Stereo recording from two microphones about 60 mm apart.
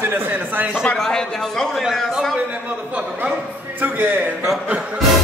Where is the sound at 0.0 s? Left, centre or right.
Right.